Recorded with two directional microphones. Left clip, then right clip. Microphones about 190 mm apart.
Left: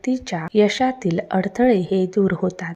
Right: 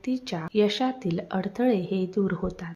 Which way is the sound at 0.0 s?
25° left (ahead or behind).